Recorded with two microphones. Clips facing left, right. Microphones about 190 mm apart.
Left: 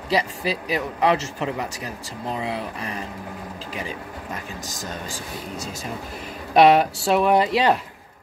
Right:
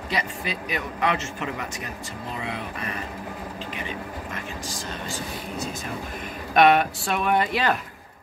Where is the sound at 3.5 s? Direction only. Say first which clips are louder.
Left 1 dB; 35° left (ahead or behind).